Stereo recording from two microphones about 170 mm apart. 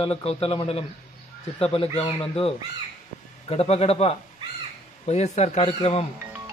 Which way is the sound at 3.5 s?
40° left (ahead or behind).